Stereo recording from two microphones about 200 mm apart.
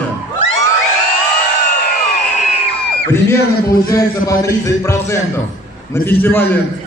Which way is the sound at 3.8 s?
15° left (ahead or behind).